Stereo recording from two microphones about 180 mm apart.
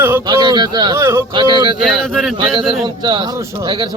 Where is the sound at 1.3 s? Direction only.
25° right (ahead or behind).